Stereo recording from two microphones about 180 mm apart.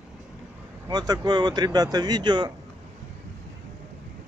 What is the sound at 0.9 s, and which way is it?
Speech, 25° right (ahead or behind).